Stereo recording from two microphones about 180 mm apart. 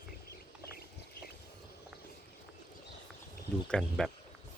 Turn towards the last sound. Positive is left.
turn(degrees=0)  # may be behind; listen again after turning